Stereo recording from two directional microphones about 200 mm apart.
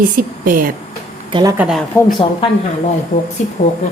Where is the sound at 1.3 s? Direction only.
25° right (ahead or behind).